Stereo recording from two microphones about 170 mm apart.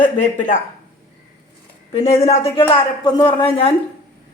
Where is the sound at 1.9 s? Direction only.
40° left (ahead or behind).